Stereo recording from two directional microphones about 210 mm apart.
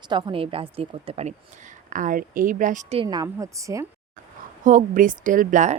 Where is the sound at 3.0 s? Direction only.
20° right (ahead or behind).